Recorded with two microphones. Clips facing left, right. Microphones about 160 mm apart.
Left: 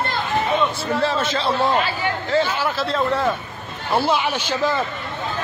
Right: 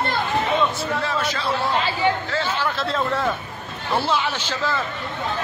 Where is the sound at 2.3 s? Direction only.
15° left (ahead or behind).